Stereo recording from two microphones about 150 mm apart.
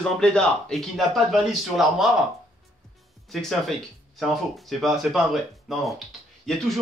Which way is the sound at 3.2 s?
Centre (ahead or behind).